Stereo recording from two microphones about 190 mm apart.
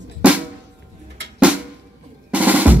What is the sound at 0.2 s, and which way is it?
Drum, 5° right (ahead or behind).